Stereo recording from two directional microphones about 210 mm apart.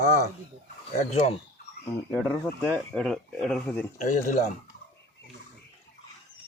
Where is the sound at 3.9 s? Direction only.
35° left (ahead or behind).